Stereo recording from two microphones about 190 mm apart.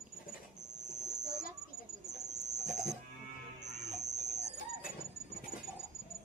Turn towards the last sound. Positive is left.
turn(degrees=-40)  # may be behind; listen again after turning